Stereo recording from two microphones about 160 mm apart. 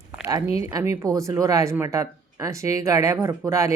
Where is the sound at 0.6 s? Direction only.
20° right (ahead or behind).